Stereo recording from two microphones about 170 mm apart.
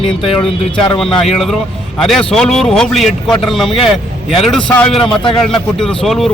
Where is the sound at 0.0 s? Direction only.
30° left (ahead or behind).